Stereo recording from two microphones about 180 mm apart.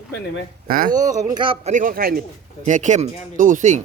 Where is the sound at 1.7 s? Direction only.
50° right (ahead or behind).